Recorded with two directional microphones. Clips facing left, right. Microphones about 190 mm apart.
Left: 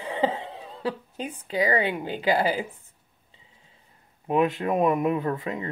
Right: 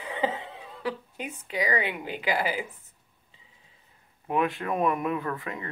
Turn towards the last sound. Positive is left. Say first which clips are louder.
# left 5 dB
turn(degrees=20)  # may be behind; listen again after turning